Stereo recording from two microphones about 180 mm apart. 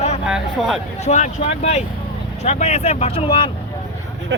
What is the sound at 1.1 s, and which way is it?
Speech, 40° left (ahead or behind).